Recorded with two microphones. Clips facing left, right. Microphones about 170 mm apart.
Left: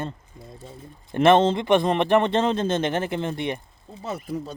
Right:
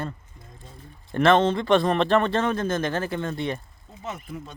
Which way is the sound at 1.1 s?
20° left (ahead or behind).